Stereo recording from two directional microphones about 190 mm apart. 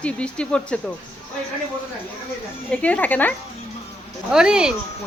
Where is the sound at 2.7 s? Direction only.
5° left (ahead or behind).